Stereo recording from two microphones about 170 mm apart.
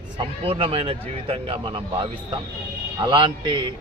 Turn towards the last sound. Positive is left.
turn(degrees=-25)  # may be behind; listen again after turning